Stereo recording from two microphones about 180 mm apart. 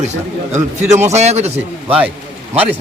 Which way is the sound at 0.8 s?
15° right (ahead or behind).